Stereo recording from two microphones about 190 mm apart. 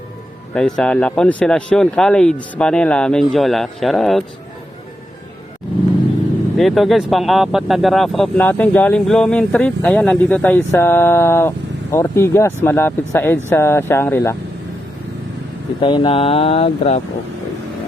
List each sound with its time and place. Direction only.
0.5 s speech: 5° left (ahead or behind)
6.6 s speech: centre (ahead or behind)
15.8 s speech: 25° left (ahead or behind)